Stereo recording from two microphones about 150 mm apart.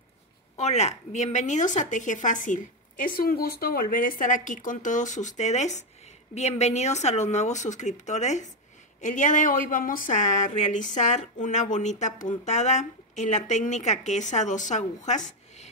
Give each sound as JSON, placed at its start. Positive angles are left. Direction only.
{"t": 0.6, "sound": "a woman's voice", "side_deg": 50}